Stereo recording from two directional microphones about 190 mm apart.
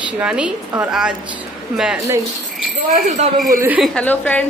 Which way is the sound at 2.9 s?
40° right (ahead or behind).